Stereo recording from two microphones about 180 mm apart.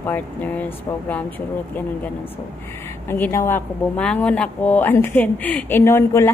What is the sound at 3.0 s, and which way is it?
A woman's voice, 10° left (ahead or behind).